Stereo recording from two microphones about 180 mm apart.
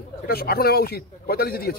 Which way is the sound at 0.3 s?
60° left (ahead or behind).